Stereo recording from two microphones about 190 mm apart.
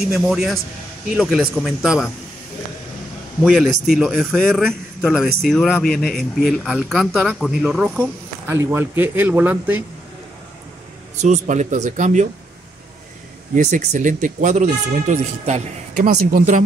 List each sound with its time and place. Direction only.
0.1 s a man's voice: centre (ahead or behind)
3.4 s a man's voice: 5° right (ahead or behind)
11.1 s speech: 40° right (ahead or behind)
13.6 s speech: 40° right (ahead or behind)